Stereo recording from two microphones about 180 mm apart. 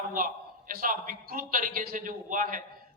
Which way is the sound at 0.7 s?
50° right (ahead or behind).